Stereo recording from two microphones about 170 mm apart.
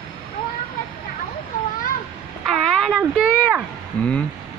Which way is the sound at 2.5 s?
5° left (ahead or behind).